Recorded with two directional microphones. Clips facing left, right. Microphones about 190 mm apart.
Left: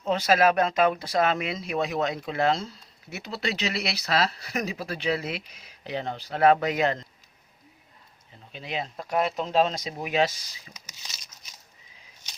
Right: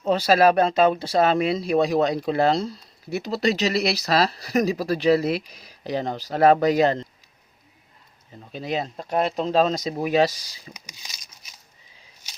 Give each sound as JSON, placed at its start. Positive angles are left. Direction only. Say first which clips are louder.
{"t": 0.0, "sound": "speech", "louder": "right 4 dB", "side_deg": -35}
{"t": 8.5, "sound": "speech", "louder": "right 6 dB", "side_deg": -40}
{"t": 10.8, "sound": "a sound", "louder": "right 2 dB", "side_deg": -10}